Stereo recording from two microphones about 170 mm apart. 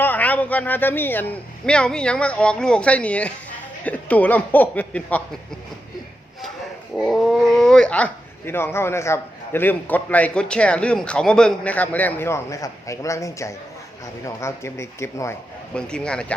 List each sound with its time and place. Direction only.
0.0 s speech: 10° left (ahead or behind)
7.0 s speech: centre (ahead or behind)